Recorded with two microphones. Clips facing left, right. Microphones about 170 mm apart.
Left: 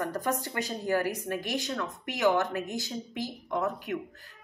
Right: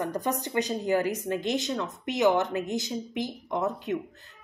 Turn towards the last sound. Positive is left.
turn(degrees=-20)  # may be behind; listen again after turning